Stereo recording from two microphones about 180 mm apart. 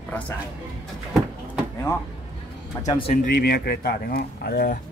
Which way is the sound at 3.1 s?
55° left (ahead or behind).